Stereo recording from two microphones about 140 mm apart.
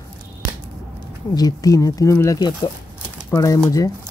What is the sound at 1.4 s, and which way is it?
Speech, 25° left (ahead or behind).